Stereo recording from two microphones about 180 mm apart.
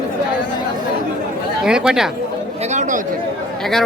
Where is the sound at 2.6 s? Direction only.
40° right (ahead or behind).